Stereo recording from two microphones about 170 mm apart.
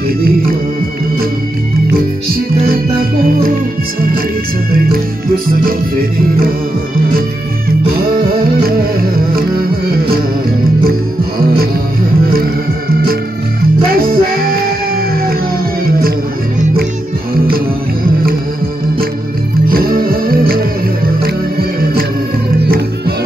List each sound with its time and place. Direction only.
7.8 s music: 60° right (ahead or behind)
13.9 s music: 60° right (ahead or behind)
19.7 s music: 60° right (ahead or behind)